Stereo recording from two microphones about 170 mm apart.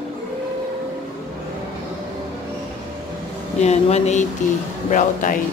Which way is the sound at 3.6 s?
40° left (ahead or behind).